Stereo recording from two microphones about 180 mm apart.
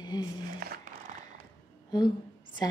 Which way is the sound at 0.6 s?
55° right (ahead or behind).